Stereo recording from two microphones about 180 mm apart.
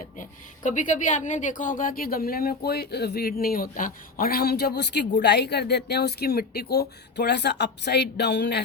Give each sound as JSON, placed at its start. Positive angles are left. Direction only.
{"t": 0.0, "sound": "a woman's voice", "side_deg": 45}